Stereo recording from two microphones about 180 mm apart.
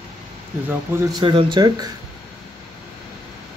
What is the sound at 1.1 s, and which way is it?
Speech, 30° right (ahead or behind).